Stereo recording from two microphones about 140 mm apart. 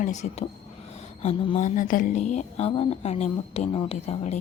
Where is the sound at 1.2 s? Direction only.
50° left (ahead or behind).